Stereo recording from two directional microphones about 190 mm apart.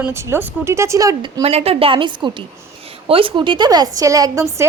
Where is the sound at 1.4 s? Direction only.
30° right (ahead or behind).